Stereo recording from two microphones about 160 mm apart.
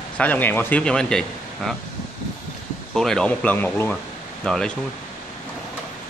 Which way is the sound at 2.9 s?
5° left (ahead or behind).